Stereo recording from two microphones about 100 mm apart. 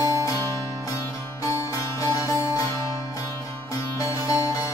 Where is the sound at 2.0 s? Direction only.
35° left (ahead or behind).